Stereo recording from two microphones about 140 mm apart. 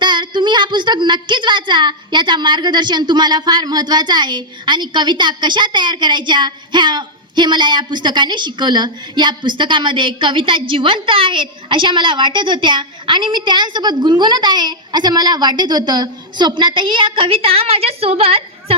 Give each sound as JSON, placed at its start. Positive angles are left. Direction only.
{"t": 0.0, "sound": "a woman's voice", "side_deg": -35}